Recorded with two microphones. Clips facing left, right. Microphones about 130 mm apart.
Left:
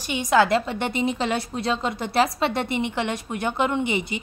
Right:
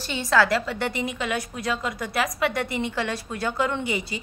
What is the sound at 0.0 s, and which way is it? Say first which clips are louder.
A woman's voice: left 2 dB; 15° left (ahead or behind).